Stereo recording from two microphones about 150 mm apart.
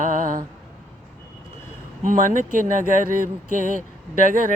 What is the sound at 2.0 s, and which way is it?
Speech, 60° right (ahead or behind).